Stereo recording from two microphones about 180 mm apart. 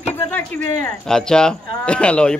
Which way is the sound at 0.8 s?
5° left (ahead or behind).